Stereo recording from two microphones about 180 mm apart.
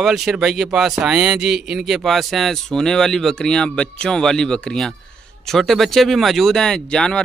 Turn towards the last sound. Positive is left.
turn(degrees=5)  # may be behind; listen again after turning